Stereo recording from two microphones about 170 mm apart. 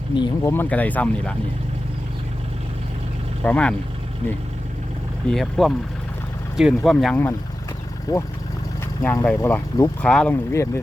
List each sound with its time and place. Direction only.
0.2 s speech: 15° left (ahead or behind)
3.4 s speech: 5° left (ahead or behind)
5.3 s speech: centre (ahead or behind)
8.1 s speech: 20° left (ahead or behind)
10.0 s speech: 5° left (ahead or behind)